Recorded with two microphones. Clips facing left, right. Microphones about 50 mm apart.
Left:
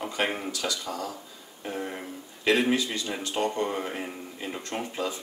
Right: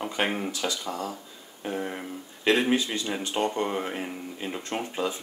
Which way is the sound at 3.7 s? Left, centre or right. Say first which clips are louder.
Right 1 dB; centre.